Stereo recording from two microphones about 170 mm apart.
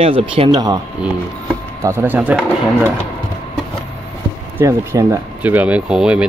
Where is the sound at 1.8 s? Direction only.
15° right (ahead or behind).